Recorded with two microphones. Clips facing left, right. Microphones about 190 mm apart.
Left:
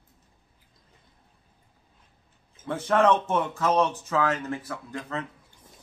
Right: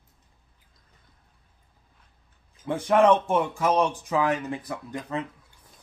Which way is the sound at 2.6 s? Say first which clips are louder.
Right 2 dB; 15° right (ahead or behind).